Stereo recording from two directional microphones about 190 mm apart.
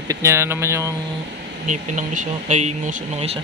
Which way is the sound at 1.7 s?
40° right (ahead or behind).